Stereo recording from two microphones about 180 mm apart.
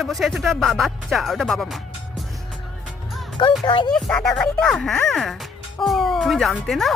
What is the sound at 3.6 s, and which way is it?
Speech, 25° left (ahead or behind).